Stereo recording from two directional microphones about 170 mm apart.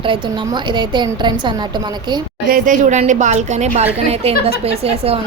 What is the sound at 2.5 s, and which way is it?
A woman's voice, 50° right (ahead or behind).